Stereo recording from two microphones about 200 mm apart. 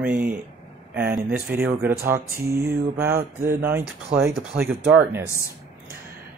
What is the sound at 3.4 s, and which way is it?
Speech, 10° right (ahead or behind).